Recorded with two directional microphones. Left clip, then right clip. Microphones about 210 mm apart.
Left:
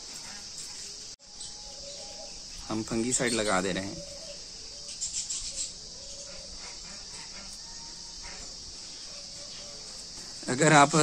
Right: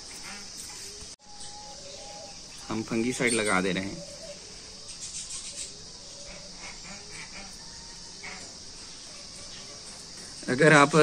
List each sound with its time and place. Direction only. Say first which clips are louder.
2.7 s speech: right 1 dB; 50° left (ahead or behind)
10.4 s a man's voice: right 2 dB; 45° left (ahead or behind)